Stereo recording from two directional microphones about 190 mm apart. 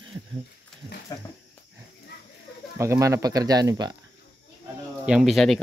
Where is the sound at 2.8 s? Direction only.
15° right (ahead or behind).